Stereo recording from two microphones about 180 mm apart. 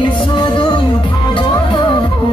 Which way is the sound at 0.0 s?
25° left (ahead or behind).